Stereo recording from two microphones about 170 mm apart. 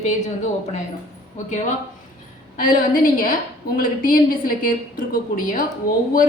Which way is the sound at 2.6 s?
55° left (ahead or behind).